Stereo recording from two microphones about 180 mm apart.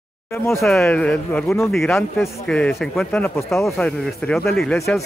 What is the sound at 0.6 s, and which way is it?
Speech, centre (ahead or behind).